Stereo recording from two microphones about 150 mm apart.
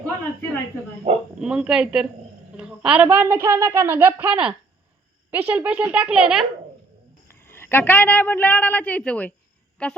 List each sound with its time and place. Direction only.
1.1 s speech: 50° right (ahead or behind)
1.4 s speech: 5° right (ahead or behind)
7.3 s a woman's voice: 15° left (ahead or behind)